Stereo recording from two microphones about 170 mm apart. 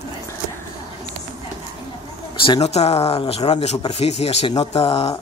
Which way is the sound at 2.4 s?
35° left (ahead or behind).